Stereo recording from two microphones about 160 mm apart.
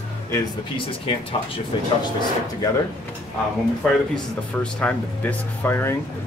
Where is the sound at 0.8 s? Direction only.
35° left (ahead or behind).